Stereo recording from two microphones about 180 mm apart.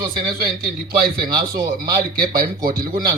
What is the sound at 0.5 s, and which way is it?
A man's voice, 55° right (ahead or behind).